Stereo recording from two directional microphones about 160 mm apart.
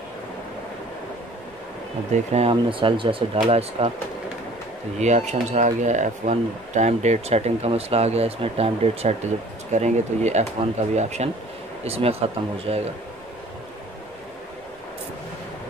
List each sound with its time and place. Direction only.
2.1 s speech: 40° right (ahead or behind)
4.9 s speech: 45° right (ahead or behind)